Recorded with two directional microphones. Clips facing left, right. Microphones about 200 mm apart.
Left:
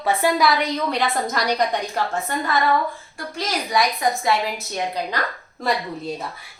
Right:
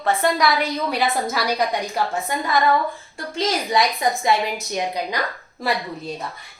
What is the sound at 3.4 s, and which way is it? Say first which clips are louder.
A woman's voice: right 2 dB; 20° right (ahead or behind).